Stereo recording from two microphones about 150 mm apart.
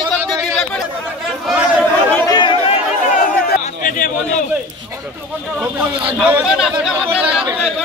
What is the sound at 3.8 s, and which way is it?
Speech, 60° left (ahead or behind).